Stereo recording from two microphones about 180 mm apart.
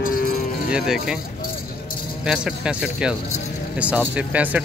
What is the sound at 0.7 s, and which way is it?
Speech, 5° right (ahead or behind).